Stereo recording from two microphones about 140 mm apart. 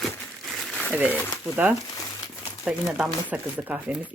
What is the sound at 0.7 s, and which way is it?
Crumpling, 5° left (ahead or behind).